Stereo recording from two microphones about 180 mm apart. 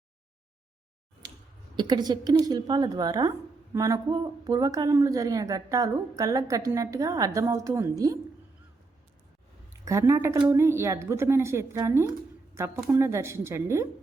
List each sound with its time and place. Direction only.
1.7 s speech: 25° right (ahead or behind)
9.8 s speech: 15° right (ahead or behind)